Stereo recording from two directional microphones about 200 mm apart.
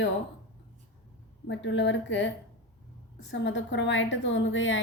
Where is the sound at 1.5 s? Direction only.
65° left (ahead or behind).